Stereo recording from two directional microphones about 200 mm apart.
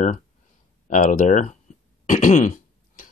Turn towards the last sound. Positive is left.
turn(degrees=40)  # may be behind; listen again after turning